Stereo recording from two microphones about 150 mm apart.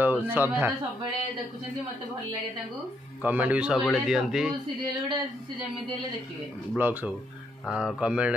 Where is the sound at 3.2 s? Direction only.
10° right (ahead or behind).